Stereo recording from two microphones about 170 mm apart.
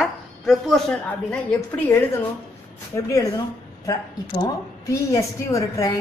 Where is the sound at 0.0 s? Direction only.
Centre (ahead or behind).